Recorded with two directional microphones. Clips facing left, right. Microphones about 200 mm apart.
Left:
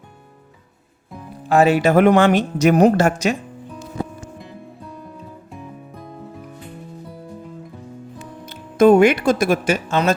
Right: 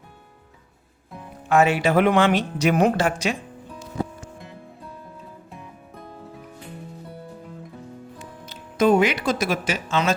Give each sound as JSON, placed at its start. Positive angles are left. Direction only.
{"t": 1.5, "sound": "speech", "side_deg": 35}
{"t": 8.4, "sound": "speech", "side_deg": 55}